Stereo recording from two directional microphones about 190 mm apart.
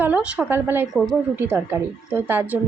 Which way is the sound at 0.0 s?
5° right (ahead or behind).